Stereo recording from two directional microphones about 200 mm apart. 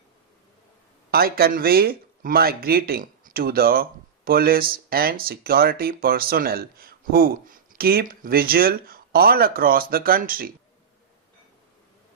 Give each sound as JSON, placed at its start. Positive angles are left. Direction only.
{"t": 1.1, "sound": "speech", "side_deg": -50}